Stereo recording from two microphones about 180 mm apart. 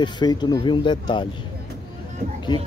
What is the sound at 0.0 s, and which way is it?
Speech, 25° left (ahead or behind).